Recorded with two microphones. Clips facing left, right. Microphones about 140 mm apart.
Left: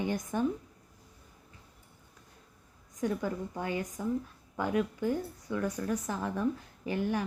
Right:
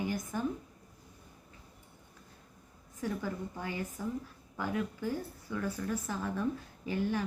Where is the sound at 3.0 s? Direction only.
20° left (ahead or behind).